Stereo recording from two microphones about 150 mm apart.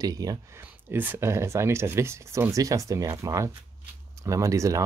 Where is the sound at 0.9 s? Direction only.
15° right (ahead or behind).